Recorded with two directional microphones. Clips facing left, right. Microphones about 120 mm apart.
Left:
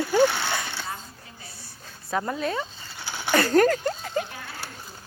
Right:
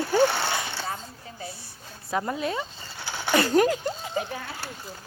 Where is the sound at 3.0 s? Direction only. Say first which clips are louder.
Even; 15° right (ahead or behind).